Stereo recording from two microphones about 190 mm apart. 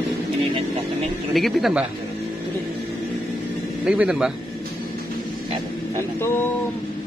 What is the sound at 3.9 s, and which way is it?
Speech, 5° right (ahead or behind).